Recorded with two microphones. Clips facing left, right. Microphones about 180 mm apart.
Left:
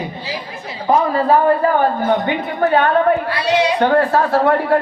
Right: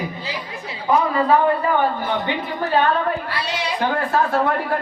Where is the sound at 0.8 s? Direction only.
40° left (ahead or behind).